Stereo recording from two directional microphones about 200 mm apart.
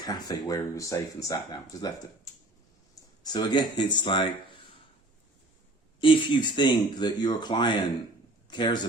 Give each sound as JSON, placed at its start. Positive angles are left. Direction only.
{"t": 0.0, "sound": "speech", "side_deg": 20}
{"t": 3.2, "sound": "speech", "side_deg": 20}
{"t": 6.0, "sound": "speech", "side_deg": 25}